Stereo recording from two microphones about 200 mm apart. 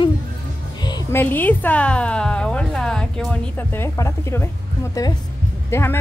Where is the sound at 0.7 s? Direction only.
20° left (ahead or behind).